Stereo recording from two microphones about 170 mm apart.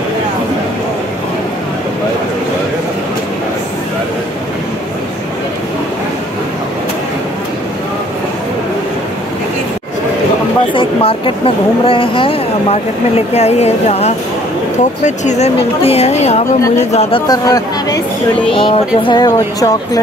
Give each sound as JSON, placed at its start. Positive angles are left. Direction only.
{"t": 10.7, "sound": "speech", "side_deg": 30}
{"t": 17.3, "sound": "speech", "side_deg": 20}